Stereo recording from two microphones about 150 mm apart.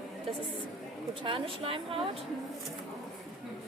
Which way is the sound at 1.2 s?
35° right (ahead or behind).